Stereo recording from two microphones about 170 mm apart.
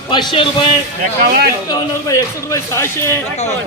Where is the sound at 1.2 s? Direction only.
65° right (ahead or behind).